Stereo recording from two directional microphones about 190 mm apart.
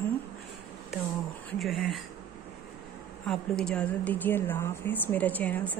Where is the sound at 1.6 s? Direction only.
Centre (ahead or behind).